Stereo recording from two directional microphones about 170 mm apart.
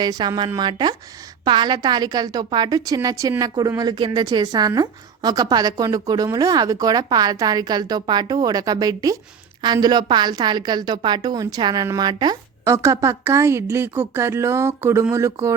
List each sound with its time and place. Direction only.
0.0 s a woman's voice: 25° right (ahead or behind)